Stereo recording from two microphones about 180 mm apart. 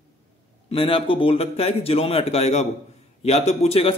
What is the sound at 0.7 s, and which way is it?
A man's voice, 30° left (ahead or behind).